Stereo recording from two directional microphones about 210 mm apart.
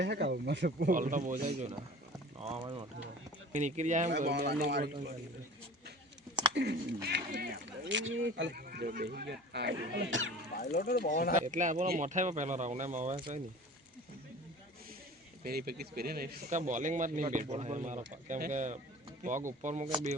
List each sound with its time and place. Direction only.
0.0 s speech: 55° right (ahead or behind)
0.9 s speech: 40° right (ahead or behind)
4.3 s speech: 50° right (ahead or behind)
6.5 s speech: 50° right (ahead or behind)
8.5 s speech: 45° right (ahead or behind); by 10.3 s 60° right (ahead or behind)
10.6 s speech: 40° left (ahead or behind)
11.4 s speech: 35° right (ahead or behind)
15.4 s speech: 45° right (ahead or behind)